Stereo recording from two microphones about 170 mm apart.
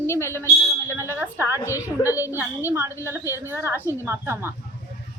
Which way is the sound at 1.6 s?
15° left (ahead or behind).